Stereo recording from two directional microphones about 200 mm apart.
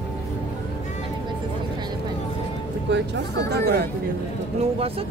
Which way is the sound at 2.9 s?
60° right (ahead or behind).